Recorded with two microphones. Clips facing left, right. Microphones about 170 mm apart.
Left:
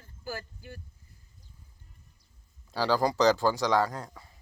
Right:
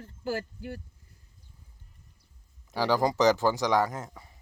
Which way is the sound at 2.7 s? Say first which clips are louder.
Right 1 dB; 20° right (ahead or behind).